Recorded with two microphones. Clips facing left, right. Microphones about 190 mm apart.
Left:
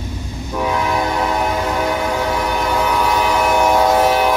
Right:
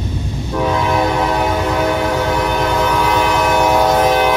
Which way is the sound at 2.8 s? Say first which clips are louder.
Right 2 dB; 5° left (ahead or behind).